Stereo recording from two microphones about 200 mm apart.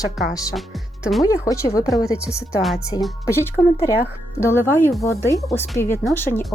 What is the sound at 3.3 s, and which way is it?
Speech, 15° left (ahead or behind).